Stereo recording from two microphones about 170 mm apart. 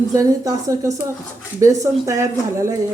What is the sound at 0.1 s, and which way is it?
Speech, 20° right (ahead or behind).